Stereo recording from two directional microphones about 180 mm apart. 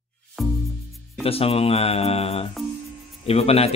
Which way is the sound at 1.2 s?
35° left (ahead or behind).